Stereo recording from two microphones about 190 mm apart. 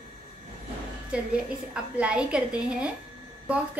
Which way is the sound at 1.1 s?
5° right (ahead or behind).